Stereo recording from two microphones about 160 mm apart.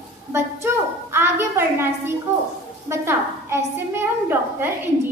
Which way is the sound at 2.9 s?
15° right (ahead or behind).